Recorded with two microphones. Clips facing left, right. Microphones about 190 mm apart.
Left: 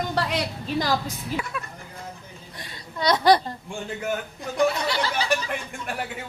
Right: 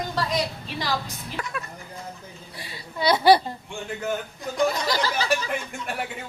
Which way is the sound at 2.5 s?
5° right (ahead or behind).